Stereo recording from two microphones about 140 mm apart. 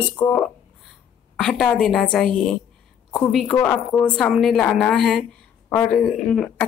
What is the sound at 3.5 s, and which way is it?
Speech, 15° left (ahead or behind).